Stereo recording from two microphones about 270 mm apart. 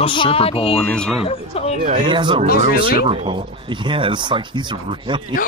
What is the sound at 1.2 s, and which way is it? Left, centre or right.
Speech, left.